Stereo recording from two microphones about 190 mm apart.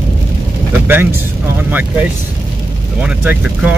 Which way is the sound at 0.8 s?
10° right (ahead or behind).